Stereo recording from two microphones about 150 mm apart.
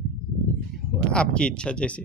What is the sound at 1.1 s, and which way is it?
Speech, 5° left (ahead or behind).